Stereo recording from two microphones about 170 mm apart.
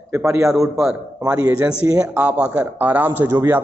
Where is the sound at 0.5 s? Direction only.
5° right (ahead or behind).